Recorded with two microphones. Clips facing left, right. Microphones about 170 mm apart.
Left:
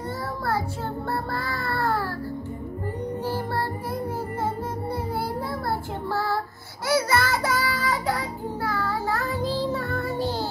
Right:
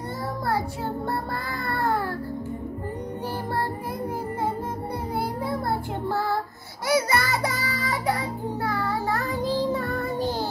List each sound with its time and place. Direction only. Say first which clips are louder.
1.5 s music: right 1 dB; 15° right (ahead or behind)
6.9 s child singing: even; 20° right (ahead or behind)